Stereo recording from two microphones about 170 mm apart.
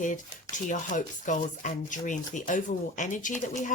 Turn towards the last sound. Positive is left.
turn(degrees=50)  # may be behind; listen again after turning